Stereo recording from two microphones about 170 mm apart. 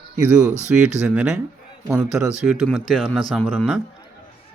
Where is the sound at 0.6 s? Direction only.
5° right (ahead or behind).